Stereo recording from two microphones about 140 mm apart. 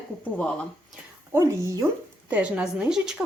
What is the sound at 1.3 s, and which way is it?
Speech, 20° right (ahead or behind).